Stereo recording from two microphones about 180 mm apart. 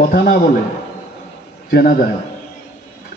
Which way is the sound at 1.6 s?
55° left (ahead or behind).